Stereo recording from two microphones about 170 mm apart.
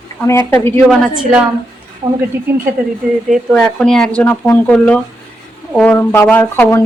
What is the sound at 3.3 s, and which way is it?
Speech, centre (ahead or behind).